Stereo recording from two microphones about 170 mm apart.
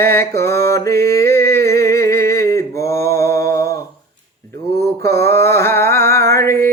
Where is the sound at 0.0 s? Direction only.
15° left (ahead or behind).